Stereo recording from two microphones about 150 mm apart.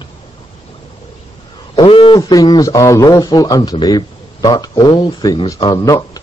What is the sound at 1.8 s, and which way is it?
A man's voice, 35° left (ahead or behind).